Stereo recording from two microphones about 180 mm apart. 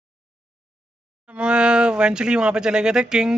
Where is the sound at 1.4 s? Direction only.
5° right (ahead or behind).